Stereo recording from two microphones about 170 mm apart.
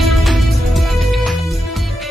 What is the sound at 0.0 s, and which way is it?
Music, centre (ahead or behind).